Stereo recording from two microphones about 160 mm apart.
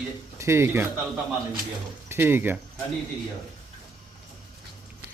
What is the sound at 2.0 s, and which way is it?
Speech, 15° right (ahead or behind).